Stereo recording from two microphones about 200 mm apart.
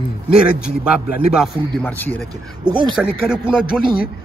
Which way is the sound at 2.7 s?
20° right (ahead or behind).